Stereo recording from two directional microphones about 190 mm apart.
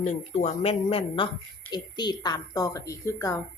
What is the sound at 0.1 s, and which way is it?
A woman's voice, 35° left (ahead or behind).